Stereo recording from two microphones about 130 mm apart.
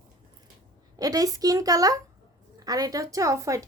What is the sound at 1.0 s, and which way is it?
A woman's voice, 30° right (ahead or behind).